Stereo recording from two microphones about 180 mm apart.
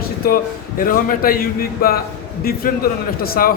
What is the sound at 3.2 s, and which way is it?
Speech, 55° left (ahead or behind).